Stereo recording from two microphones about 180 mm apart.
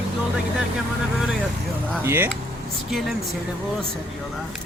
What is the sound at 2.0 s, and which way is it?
Speech, 10° right (ahead or behind).